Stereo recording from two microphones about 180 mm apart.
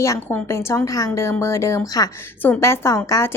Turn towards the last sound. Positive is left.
turn(degrees=15)  # may be behind; listen again after turning